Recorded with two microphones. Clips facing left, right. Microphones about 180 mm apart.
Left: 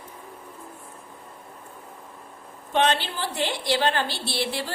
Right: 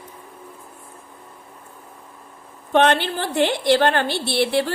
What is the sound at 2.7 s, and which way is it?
A woman's voice, 60° right (ahead or behind).